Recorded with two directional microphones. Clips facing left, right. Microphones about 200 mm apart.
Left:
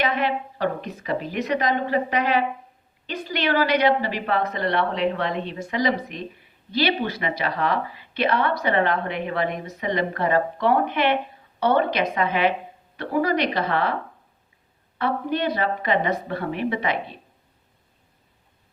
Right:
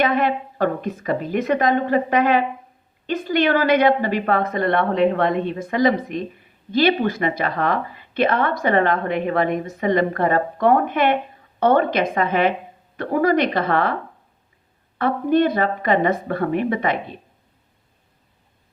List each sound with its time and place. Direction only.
0.0 s a woman's voice: 50° right (ahead or behind)
14.9 s a woman's voice: 50° right (ahead or behind)